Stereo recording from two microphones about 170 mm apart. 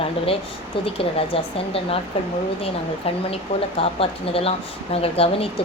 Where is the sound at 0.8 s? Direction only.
35° left (ahead or behind).